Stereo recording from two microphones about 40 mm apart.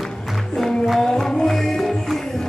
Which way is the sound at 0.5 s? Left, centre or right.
Centre.